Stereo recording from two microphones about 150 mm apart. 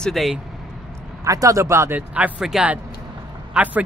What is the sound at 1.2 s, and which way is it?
Speech, 20° right (ahead or behind).